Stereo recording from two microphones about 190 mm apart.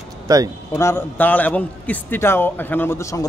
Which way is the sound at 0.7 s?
15° left (ahead or behind).